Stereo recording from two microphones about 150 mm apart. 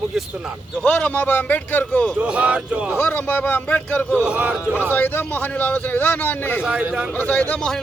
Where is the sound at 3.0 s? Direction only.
10° left (ahead or behind).